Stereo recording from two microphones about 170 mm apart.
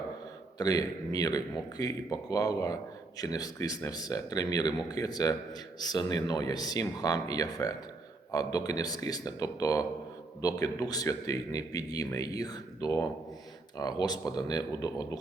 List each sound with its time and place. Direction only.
0.6 s a man's voice: 20° left (ahead or behind)